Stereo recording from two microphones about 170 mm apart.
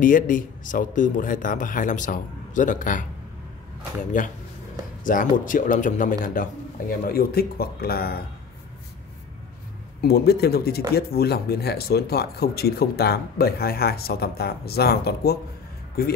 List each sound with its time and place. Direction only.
0.0 s a man's voice: 50° left (ahead or behind)
7.1 s speech: 65° left (ahead or behind)
10.0 s speech: 70° left (ahead or behind)